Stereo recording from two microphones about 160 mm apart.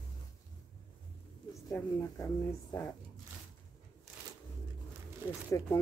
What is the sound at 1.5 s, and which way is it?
Speech, 20° left (ahead or behind).